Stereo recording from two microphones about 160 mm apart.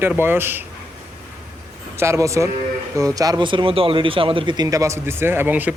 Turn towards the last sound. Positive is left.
turn(degrees=-10)  # may be behind; listen again after turning